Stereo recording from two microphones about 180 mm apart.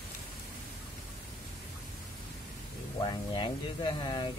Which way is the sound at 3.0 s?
25° left (ahead or behind).